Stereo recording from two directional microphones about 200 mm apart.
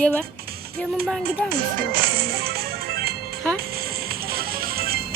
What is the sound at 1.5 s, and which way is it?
Music, 50° right (ahead or behind).